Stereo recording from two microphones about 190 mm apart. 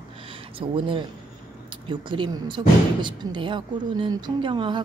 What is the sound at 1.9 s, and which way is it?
Speech, 25° right (ahead or behind).